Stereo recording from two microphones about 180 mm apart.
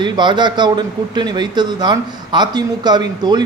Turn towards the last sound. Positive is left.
turn(degrees=-25)  # may be behind; listen again after turning